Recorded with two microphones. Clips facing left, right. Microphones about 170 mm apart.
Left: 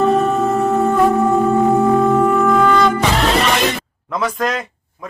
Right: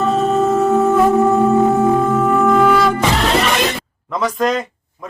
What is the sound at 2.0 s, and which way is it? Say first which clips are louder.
Wind instrument: left 1 dB; centre (ahead or behind).